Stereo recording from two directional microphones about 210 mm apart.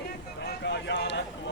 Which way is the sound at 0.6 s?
55° left (ahead or behind).